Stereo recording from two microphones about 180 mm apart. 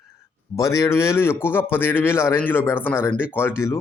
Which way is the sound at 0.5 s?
15° left (ahead or behind).